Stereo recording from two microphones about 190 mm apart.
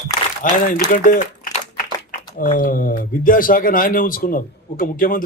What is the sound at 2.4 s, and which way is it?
A man's voice, 45° left (ahead or behind).